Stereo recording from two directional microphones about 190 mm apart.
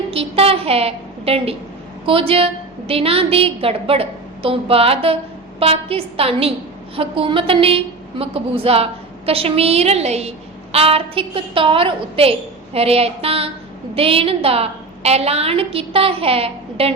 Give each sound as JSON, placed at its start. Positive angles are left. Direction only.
{"t": 0.1, "sound": "a woman's voice", "side_deg": -30}